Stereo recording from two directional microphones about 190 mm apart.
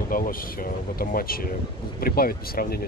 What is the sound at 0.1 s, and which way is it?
Speech, 50° left (ahead or behind).